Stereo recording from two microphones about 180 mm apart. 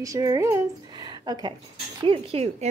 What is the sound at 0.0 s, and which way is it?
Speech, 20° right (ahead or behind).